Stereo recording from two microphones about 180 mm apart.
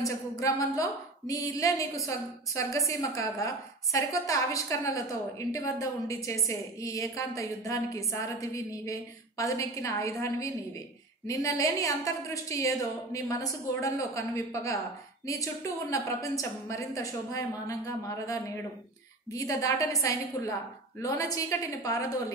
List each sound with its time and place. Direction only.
0.0 s a woman's voice: 20° left (ahead or behind)
15.9 s a woman's voice: 15° left (ahead or behind)